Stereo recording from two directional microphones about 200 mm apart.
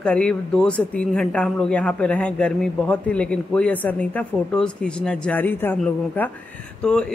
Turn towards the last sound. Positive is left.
turn(degrees=5)  # may be behind; listen again after turning